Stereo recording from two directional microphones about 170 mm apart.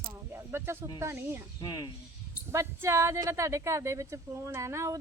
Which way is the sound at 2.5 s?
15° right (ahead or behind).